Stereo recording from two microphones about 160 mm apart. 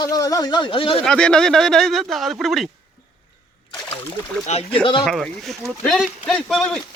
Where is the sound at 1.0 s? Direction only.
5° left (ahead or behind).